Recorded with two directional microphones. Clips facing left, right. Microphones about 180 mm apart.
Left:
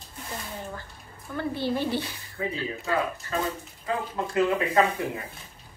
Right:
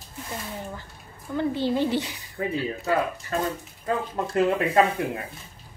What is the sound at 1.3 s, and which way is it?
A woman's voice, 15° right (ahead or behind).